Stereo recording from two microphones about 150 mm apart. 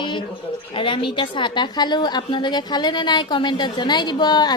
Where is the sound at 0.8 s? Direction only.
35° left (ahead or behind).